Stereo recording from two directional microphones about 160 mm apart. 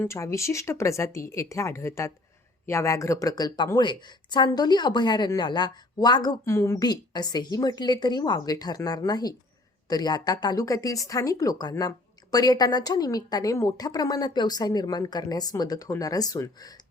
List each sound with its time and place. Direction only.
0.0 s a woman's voice: 20° left (ahead or behind)